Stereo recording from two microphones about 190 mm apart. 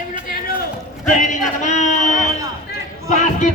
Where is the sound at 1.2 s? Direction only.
40° left (ahead or behind).